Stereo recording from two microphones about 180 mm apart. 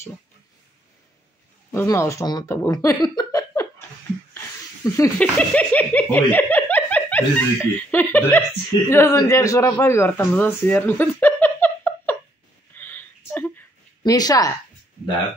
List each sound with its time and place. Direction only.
1.7 s speech: 15° left (ahead or behind)
4.8 s speech: 20° left (ahead or behind)
5.2 s speech: 5° left (ahead or behind)
12.7 s a sound: 10° left (ahead or behind)
14.1 s speech: 20° left (ahead or behind)